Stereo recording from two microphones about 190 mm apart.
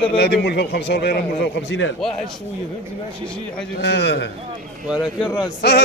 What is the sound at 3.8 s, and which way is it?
Speech, 65° left (ahead or behind).